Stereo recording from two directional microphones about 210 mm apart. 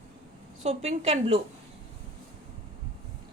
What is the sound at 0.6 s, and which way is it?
Speech, 30° right (ahead or behind).